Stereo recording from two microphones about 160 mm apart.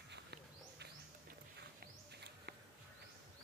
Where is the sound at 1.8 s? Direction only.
90° right.